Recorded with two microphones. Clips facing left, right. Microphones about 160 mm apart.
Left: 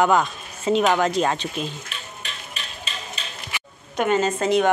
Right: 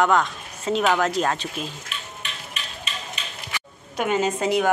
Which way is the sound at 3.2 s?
35° left (ahead or behind).